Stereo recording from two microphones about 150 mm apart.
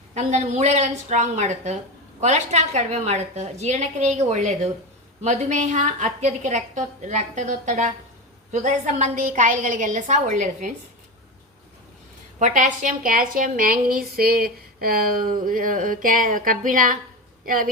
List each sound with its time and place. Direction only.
0.1 s a woman's voice: 50° right (ahead or behind)
12.4 s a woman's voice: 55° right (ahead or behind)